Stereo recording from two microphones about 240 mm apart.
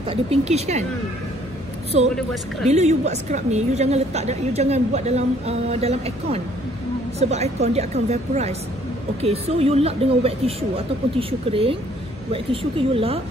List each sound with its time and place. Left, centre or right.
0.1 s a woman's voice: right
1.9 s a woman's voice: right